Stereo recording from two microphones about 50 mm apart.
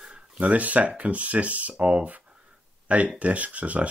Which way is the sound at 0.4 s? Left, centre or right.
Right.